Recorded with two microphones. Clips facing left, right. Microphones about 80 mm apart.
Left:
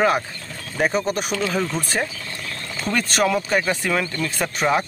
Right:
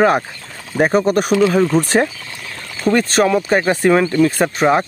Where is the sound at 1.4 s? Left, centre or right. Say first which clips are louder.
Right 9 dB; centre.